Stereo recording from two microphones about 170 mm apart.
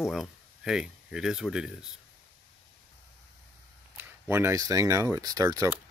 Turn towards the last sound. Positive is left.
turn(degrees=-20)  # may be behind; listen again after turning